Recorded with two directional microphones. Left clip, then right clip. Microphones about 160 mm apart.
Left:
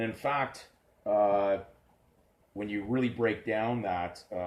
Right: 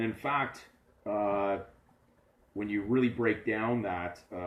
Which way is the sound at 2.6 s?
20° left (ahead or behind).